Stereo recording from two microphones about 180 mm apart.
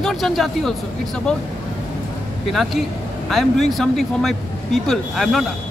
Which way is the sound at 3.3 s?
Centre (ahead or behind).